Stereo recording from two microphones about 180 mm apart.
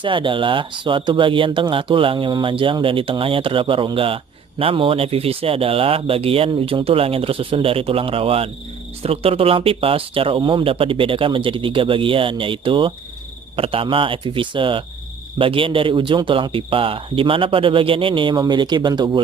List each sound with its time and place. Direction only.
0.0 s speech: 30° right (ahead or behind)